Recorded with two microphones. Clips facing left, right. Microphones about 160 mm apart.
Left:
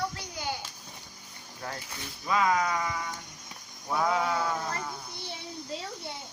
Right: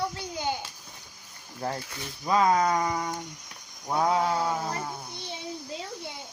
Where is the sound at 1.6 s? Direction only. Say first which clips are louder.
Right 6 dB; 35° right (ahead or behind).